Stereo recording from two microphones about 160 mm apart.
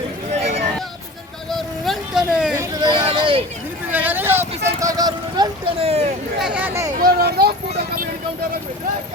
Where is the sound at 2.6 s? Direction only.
25° right (ahead or behind).